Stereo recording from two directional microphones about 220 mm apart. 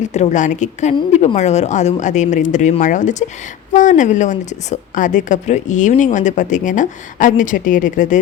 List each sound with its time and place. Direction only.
0.1 s a woman's voice: 35° left (ahead or behind)